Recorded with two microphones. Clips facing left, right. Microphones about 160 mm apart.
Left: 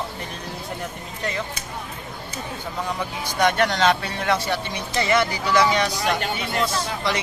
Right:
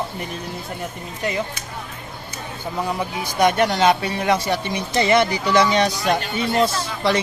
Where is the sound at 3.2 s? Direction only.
10° right (ahead or behind).